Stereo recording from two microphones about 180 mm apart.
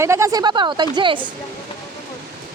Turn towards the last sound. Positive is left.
turn(degrees=-25)  # may be behind; listen again after turning